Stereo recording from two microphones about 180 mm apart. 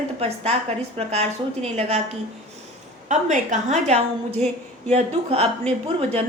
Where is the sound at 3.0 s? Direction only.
40° right (ahead or behind).